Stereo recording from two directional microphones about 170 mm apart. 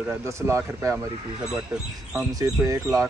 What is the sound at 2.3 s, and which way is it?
Speech, 20° right (ahead or behind).